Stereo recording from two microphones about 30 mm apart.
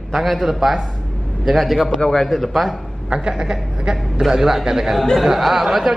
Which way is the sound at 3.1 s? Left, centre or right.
Right.